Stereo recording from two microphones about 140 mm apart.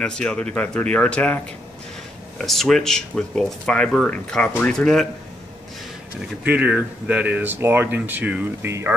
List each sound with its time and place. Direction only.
0.0 s speech: 5° left (ahead or behind)
6.4 s speech: 10° right (ahead or behind)